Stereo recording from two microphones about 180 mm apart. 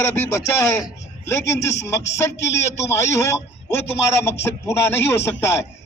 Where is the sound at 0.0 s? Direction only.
15° left (ahead or behind).